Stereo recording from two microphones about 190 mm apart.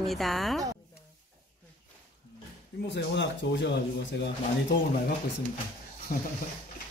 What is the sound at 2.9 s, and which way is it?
Speech, 65° left (ahead or behind).